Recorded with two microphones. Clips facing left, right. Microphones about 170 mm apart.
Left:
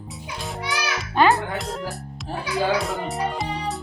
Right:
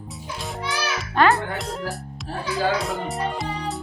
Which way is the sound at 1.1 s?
Centre (ahead or behind).